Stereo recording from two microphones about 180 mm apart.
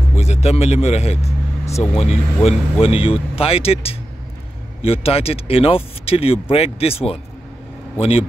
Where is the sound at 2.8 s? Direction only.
30° left (ahead or behind).